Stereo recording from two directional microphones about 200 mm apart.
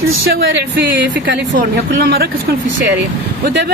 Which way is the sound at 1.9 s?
55° right (ahead or behind).